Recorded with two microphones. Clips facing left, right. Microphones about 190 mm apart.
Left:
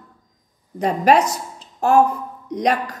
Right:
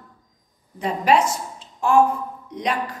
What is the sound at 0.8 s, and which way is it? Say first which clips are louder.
A woman's voice: left 3 dB; 45° left (ahead or behind).